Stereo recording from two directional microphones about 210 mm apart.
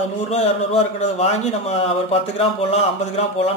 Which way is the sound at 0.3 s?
30° left (ahead or behind).